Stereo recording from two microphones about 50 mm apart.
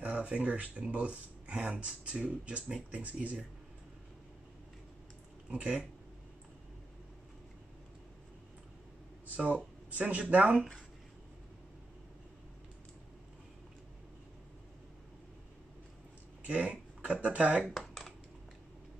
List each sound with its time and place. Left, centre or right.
0.0 s speech: right
5.5 s speech: right
9.3 s speech: right
16.4 s speech: right